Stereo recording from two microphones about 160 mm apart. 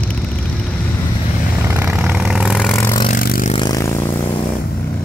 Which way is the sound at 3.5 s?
25° left (ahead or behind).